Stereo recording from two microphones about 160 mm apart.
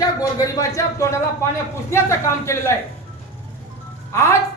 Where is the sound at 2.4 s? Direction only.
15° left (ahead or behind).